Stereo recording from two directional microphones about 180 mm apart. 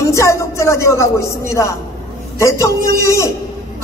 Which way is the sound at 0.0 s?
15° left (ahead or behind).